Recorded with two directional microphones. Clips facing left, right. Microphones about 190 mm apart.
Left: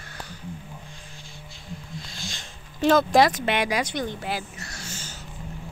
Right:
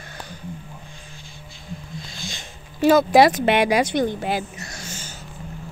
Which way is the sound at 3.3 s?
65° right (ahead or behind).